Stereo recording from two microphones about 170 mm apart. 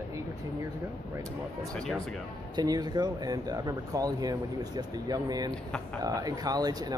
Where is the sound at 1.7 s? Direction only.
5° left (ahead or behind).